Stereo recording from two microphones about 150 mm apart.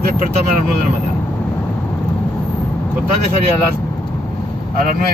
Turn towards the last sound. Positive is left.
turn(degrees=-75)  # may be behind; listen again after turning